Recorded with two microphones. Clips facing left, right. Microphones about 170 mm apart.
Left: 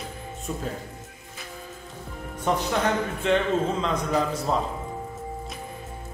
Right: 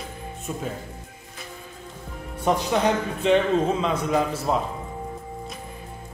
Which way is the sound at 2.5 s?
15° right (ahead or behind).